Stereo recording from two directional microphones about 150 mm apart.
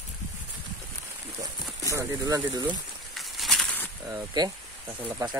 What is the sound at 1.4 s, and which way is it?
Speech, 20° right (ahead or behind).